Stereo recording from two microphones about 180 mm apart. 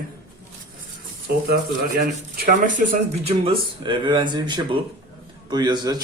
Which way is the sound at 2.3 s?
50° right (ahead or behind).